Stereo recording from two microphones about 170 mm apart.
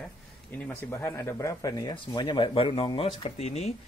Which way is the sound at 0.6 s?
15° left (ahead or behind).